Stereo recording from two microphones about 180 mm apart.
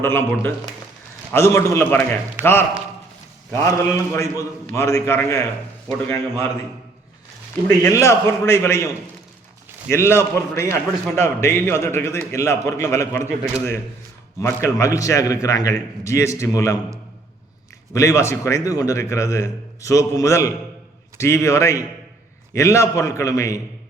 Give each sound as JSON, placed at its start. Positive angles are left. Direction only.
{"t": 0.0, "sound": "a man's voice", "side_deg": 15}
{"t": 7.9, "sound": "a man's voice", "side_deg": 15}
{"t": 9.9, "sound": "a man's voice", "side_deg": 15}
{"t": 14.4, "sound": "a man's voice", "side_deg": 15}
{"t": 17.9, "sound": "a man's voice", "side_deg": 15}